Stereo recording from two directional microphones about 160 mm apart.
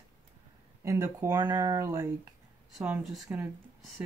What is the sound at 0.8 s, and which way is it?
Speech, 15° right (ahead or behind).